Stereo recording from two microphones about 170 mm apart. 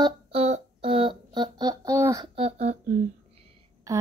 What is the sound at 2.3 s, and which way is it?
Speech, 40° right (ahead or behind).